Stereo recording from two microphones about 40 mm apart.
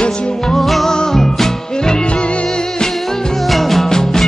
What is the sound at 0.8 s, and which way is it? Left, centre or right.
Music, centre.